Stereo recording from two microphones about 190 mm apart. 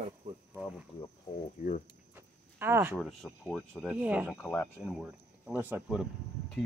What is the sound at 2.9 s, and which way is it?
Speech, centre (ahead or behind).